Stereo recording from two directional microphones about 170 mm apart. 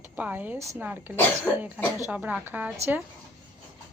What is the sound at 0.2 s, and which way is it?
Speech, 10° right (ahead or behind).